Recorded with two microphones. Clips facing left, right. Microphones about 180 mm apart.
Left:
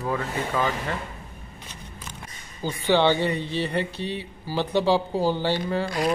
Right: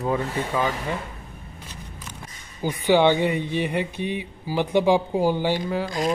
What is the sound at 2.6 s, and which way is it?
Speech, 15° right (ahead or behind).